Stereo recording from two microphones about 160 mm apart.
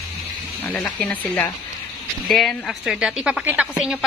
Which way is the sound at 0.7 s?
5° left (ahead or behind).